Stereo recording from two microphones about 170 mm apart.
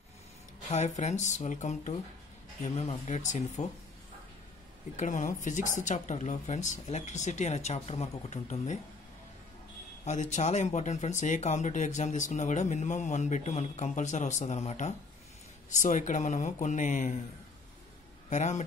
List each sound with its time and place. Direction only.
0.7 s speech: 45° left (ahead or behind)
4.9 s speech: 50° left (ahead or behind)
10.0 s speech: 45° left (ahead or behind)
18.3 s speech: 45° left (ahead or behind)